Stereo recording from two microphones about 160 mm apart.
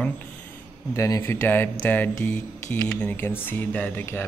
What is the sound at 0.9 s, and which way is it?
Speech, 20° left (ahead or behind).